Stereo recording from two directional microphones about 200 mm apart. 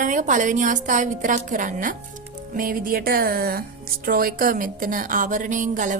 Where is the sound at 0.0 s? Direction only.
40° right (ahead or behind).